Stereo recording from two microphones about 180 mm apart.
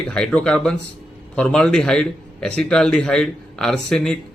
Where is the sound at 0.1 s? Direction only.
5° left (ahead or behind).